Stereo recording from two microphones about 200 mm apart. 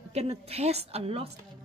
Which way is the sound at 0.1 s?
30° right (ahead or behind).